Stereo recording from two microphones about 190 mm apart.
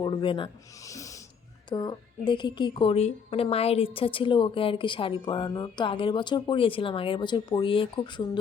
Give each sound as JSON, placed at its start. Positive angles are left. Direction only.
{"t": 0.0, "sound": "a woman's voice", "side_deg": 25}